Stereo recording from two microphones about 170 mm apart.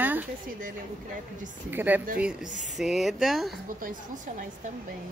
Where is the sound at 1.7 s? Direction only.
10° right (ahead or behind).